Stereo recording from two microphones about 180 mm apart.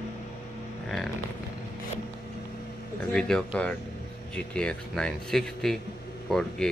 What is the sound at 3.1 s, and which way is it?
A man's voice, 5° left (ahead or behind).